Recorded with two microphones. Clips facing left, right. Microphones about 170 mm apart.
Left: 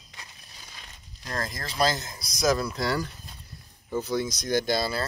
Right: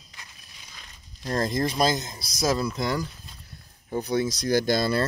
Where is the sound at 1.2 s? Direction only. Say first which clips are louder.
Right 9 dB; 25° right (ahead or behind).